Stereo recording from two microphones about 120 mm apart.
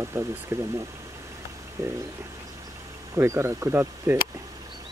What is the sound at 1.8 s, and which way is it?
Speech, 25° right (ahead or behind).